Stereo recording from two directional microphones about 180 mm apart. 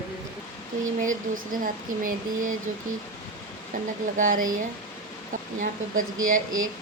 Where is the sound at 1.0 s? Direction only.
50° right (ahead or behind).